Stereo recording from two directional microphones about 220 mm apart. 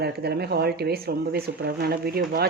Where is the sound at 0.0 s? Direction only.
45° right (ahead or behind).